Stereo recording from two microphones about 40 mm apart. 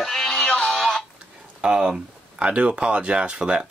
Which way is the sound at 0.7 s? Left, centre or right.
Centre.